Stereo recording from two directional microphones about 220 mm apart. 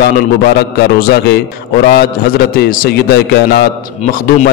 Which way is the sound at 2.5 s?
45° left (ahead or behind).